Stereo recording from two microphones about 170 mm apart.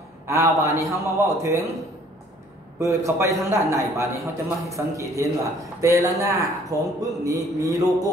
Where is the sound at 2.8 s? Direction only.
20° right (ahead or behind).